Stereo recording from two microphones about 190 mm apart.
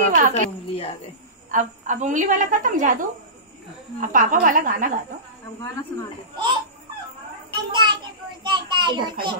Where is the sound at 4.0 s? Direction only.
45° right (ahead or behind).